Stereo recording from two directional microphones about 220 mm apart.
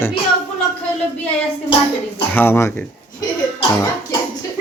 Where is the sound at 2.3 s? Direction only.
10° left (ahead or behind).